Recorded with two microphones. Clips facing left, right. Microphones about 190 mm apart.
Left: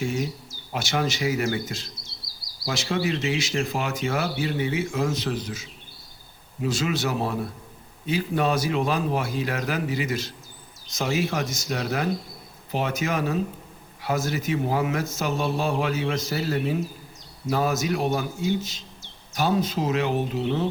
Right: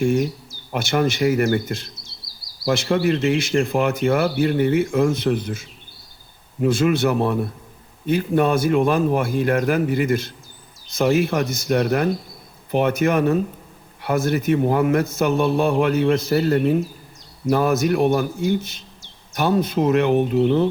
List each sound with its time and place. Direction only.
0.0 s speech: 55° right (ahead or behind)
2.3 s a sound: centre (ahead or behind)
2.6 s a man's voice: 55° right (ahead or behind)